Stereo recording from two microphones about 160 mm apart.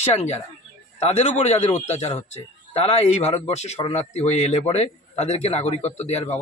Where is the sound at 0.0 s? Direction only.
45° left (ahead or behind).